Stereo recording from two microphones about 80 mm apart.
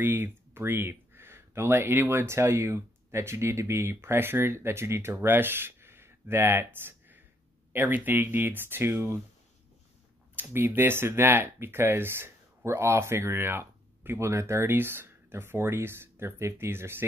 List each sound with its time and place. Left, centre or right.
0.0 s speech: right
10.3 s speech: right